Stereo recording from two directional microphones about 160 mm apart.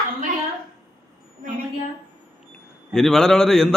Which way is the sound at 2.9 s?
5° left (ahead or behind).